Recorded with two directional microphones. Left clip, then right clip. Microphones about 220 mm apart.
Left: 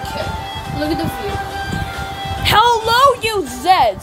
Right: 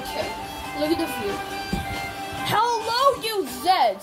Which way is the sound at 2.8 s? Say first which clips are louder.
Left 8 dB; 30° left (ahead or behind).